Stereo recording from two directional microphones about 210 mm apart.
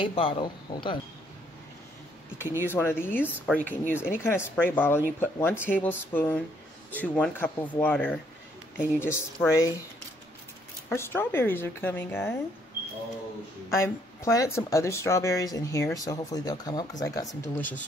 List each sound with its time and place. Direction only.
0.0 s speech: 25° left (ahead or behind)
2.3 s speech: 10° right (ahead or behind)
2.7 s speech: 10° left (ahead or behind)
3.3 s speech: 10° right (ahead or behind)
3.5 s speech: 10° left (ahead or behind)
10.9 s speech: 10° left (ahead or behind)
13.7 s speech: 15° left (ahead or behind)